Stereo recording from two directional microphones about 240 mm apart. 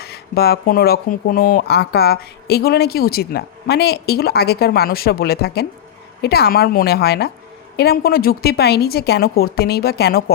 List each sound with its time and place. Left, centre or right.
0.0 s speech: left